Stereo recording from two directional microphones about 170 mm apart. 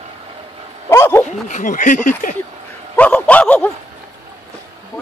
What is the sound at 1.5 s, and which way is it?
Speech, 45° left (ahead or behind).